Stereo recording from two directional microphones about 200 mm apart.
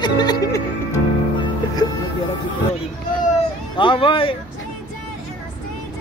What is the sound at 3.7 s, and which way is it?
Music, 25° left (ahead or behind).